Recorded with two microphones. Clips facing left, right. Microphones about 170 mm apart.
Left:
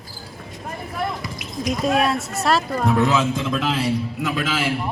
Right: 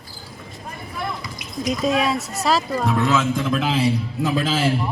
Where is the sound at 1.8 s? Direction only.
Centre (ahead or behind).